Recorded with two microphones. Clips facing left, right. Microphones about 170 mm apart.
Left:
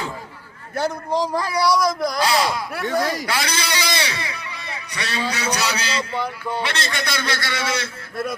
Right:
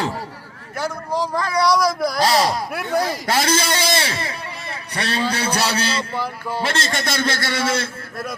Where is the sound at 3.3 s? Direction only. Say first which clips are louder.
Right 5 dB; 45° right (ahead or behind).